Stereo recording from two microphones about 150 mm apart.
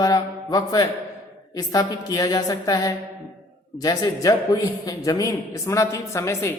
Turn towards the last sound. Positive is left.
turn(degrees=20)  # may be behind; listen again after turning